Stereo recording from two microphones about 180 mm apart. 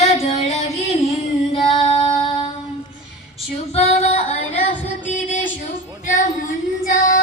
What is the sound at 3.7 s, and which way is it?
Singing, 35° left (ahead or behind).